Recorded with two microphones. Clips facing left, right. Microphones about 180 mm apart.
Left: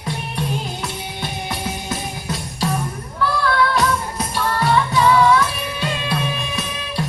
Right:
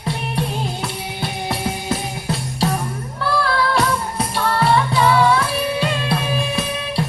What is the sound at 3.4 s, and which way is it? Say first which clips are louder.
Music: even; 30° right (ahead or behind).